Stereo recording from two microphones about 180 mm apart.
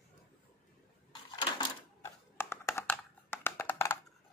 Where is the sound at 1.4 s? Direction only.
25° left (ahead or behind).